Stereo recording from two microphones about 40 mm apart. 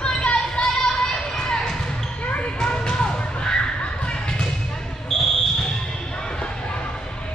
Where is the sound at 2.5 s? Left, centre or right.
Left.